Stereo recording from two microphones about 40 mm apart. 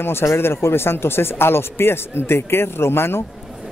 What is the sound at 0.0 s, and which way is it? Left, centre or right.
A man's voice, left.